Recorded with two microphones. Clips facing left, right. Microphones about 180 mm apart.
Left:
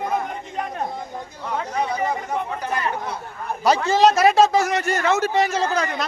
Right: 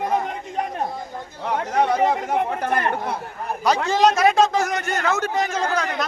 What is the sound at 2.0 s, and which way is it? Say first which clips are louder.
Speech: right 4 dB; 60° right (ahead or behind).